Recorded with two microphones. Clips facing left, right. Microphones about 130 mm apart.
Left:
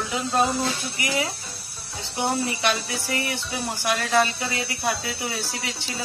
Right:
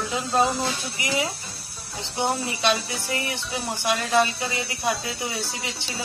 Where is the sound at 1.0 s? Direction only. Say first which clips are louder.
Even; 20° right (ahead or behind).